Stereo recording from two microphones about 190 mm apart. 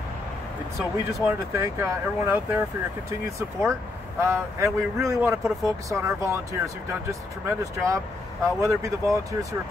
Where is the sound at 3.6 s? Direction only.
15° right (ahead or behind).